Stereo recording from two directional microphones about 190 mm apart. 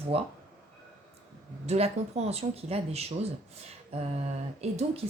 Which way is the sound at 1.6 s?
35° right (ahead or behind).